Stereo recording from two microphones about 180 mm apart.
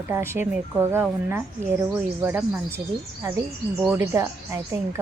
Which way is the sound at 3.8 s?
15° right (ahead or behind).